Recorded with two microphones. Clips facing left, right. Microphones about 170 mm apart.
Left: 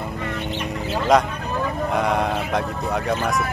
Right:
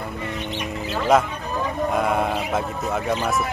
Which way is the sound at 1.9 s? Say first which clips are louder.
Even; centre (ahead or behind).